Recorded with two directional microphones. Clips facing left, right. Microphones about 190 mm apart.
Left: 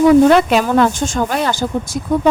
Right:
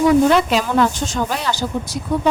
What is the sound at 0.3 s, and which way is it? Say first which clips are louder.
Speech: left 4 dB; 55° left (ahead or behind).